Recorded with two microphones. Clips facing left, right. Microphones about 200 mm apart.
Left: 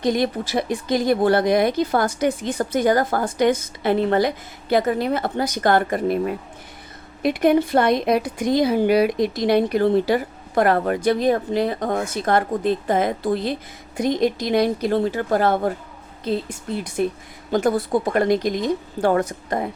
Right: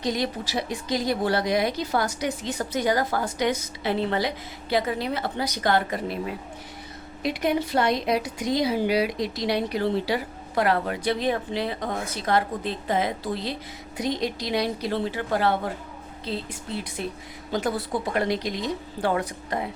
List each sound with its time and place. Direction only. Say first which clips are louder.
0.0 s a woman's voice: left 6 dB; 55° left (ahead or behind)